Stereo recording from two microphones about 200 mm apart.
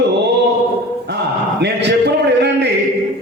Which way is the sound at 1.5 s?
55° right (ahead or behind).